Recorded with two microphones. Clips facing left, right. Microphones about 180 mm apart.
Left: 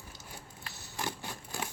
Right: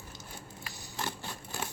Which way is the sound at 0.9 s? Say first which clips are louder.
Even; 10° left (ahead or behind).